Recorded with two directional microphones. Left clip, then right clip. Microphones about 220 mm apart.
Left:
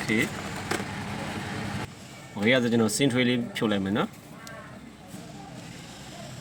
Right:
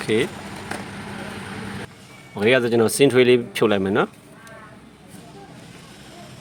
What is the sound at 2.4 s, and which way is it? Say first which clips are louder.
Speech: right 6 dB; 45° right (ahead or behind).